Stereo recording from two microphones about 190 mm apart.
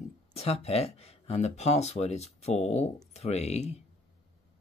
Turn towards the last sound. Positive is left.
turn(degrees=35)  # may be behind; listen again after turning